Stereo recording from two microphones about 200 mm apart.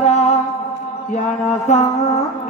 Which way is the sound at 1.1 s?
35° left (ahead or behind).